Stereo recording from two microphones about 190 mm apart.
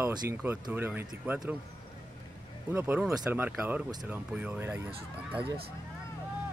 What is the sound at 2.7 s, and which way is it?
Speech, 10° right (ahead or behind).